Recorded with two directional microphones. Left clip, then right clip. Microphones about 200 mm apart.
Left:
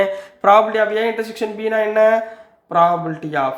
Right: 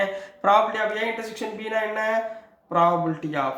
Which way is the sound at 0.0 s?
35° left (ahead or behind).